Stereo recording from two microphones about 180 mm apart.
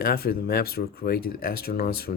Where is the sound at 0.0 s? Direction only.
55° left (ahead or behind).